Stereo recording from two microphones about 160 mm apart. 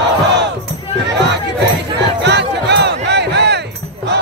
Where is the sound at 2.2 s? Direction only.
90° right.